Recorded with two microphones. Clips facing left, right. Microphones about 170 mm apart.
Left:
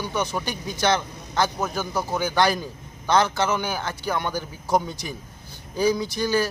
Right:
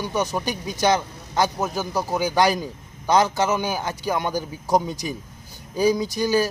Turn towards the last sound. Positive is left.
turn(degrees=-15)  # may be behind; listen again after turning